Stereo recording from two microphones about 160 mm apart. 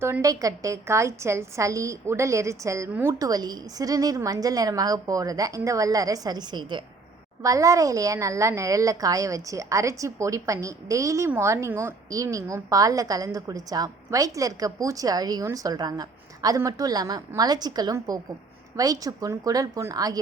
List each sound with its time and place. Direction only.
0.0 s a woman's voice: 20° right (ahead or behind)